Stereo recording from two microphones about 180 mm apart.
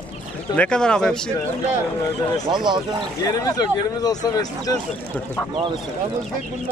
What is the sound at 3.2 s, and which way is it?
Speech, 20° left (ahead or behind).